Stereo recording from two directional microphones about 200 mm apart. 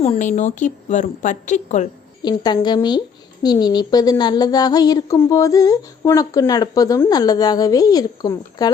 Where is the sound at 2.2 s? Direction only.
20° left (ahead or behind).